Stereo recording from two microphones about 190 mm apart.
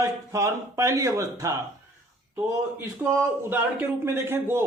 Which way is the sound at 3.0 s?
10° right (ahead or behind).